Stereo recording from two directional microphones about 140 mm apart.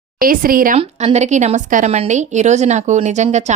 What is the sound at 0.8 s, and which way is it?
A woman's voice, 50° right (ahead or behind).